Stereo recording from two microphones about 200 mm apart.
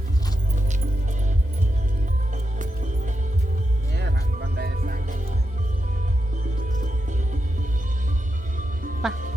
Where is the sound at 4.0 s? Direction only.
55° right (ahead or behind).